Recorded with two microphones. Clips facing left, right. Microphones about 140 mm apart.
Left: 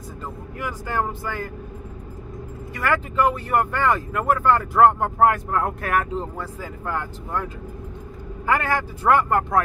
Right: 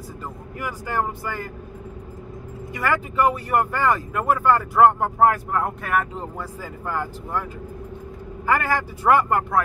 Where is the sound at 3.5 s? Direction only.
10° right (ahead or behind).